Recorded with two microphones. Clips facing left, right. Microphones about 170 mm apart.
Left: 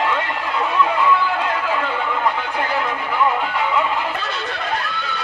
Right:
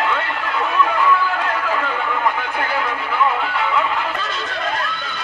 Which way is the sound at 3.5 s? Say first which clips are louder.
Even; 10° left (ahead or behind).